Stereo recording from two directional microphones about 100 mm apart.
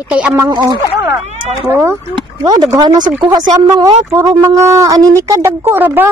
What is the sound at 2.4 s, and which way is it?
Speech, 40° right (ahead or behind).